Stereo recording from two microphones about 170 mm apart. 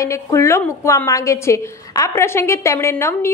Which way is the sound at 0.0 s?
15° left (ahead or behind).